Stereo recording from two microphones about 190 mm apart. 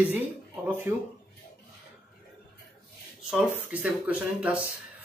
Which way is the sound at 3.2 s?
5° right (ahead or behind).